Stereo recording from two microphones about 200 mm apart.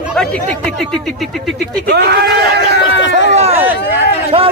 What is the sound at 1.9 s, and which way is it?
Speech, 55° right (ahead or behind).